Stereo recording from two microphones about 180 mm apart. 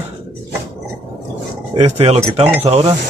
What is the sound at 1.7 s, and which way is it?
Speech, 35° right (ahead or behind).